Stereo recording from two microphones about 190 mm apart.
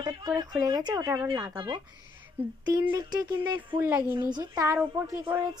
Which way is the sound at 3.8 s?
10° right (ahead or behind).